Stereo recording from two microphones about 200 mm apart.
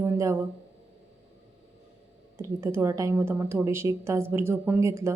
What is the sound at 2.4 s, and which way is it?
A woman's voice, 15° right (ahead or behind).